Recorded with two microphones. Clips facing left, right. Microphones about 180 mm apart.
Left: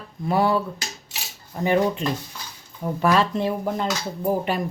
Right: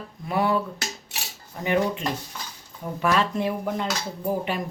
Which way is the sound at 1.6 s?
35° left (ahead or behind).